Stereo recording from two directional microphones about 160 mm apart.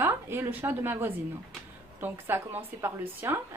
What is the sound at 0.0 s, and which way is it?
A woman's voice, 15° right (ahead or behind).